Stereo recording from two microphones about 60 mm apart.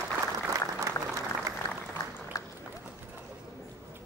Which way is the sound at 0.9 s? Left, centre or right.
Right.